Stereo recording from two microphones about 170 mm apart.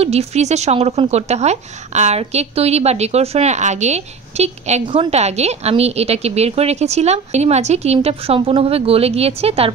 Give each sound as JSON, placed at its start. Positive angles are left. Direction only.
{"t": 0.0, "sound": "a woman's voice", "side_deg": -40}